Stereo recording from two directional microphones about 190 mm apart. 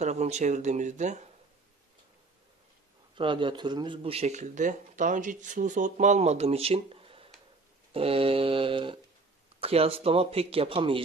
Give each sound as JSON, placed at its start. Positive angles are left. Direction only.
{"t": 0.0, "sound": "speech", "side_deg": -35}
{"t": 3.2, "sound": "speech", "side_deg": -25}
{"t": 7.9, "sound": "mantra", "side_deg": -30}
{"t": 9.6, "sound": "speech", "side_deg": -30}